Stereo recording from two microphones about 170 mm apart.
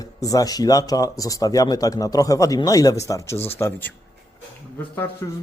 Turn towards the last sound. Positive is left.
turn(degrees=10)  # may be behind; listen again after turning